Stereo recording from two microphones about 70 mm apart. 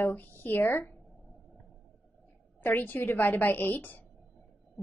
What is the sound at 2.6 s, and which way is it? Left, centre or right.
A woman's voice, left.